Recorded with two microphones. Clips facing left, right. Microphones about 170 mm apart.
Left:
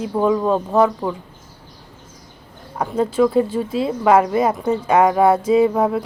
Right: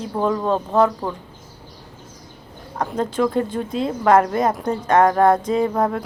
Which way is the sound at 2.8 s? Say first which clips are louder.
Left 4 dB; 5° left (ahead or behind).